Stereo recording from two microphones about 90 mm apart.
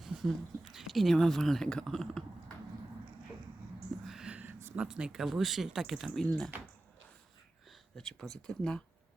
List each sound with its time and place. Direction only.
0.0 s speech: 5° right (ahead or behind)
4.0 s whispering: 5° right (ahead or behind)
4.7 s speech: 10° right (ahead or behind)
7.9 s speech: 5° left (ahead or behind)